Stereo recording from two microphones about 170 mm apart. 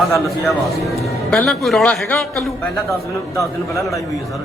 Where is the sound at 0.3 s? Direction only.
Centre (ahead or behind); by 3.8 s 20° left (ahead or behind).